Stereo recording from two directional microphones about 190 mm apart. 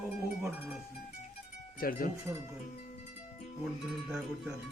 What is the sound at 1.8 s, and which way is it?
Speech, 50° left (ahead or behind).